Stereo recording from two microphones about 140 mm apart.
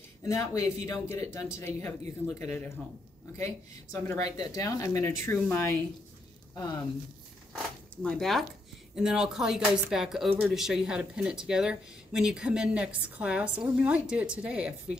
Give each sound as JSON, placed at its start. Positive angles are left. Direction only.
{"t": 0.2, "sound": "speech", "side_deg": 20}
{"t": 7.5, "sound": "speech", "side_deg": 5}